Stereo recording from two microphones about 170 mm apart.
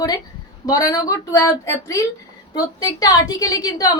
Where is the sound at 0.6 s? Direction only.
20° left (ahead or behind).